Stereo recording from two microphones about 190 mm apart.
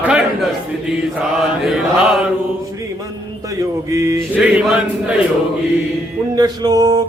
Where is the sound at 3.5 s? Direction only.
15° right (ahead or behind).